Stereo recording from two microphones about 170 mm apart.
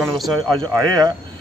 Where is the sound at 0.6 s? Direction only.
20° right (ahead or behind).